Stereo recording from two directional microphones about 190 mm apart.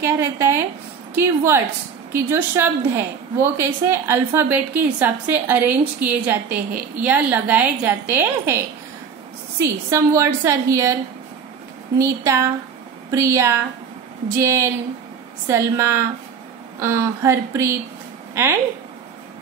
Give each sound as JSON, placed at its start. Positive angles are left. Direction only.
{"t": 0.0, "sound": "a woman's voice", "side_deg": -15}
{"t": 12.0, "sound": "a woman's voice", "side_deg": -15}